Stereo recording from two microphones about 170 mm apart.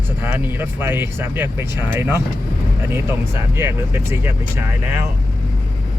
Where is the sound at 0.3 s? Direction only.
10° right (ahead or behind).